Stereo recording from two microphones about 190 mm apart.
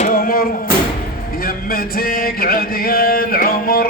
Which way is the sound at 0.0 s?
50° left (ahead or behind).